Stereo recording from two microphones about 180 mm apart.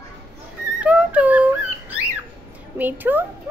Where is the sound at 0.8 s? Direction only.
5° right (ahead or behind).